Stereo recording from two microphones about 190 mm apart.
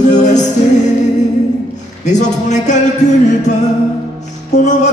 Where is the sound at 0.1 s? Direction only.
40° left (ahead or behind).